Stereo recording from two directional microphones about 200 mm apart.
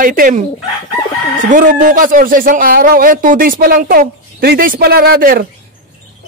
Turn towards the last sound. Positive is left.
turn(degrees=-50)  # may be behind; listen again after turning